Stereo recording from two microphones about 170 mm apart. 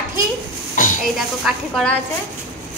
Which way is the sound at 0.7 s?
50° left (ahead or behind).